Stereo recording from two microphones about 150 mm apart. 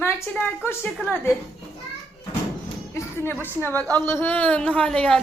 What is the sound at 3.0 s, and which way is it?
Speech, 15° left (ahead or behind).